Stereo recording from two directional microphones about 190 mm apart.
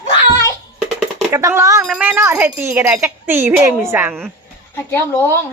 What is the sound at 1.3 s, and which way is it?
Speech, 15° right (ahead or behind).